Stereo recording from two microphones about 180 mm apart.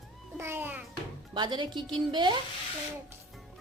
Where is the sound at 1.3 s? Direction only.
25° right (ahead or behind).